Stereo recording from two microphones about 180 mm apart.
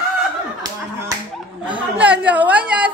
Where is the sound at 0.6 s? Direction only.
20° right (ahead or behind).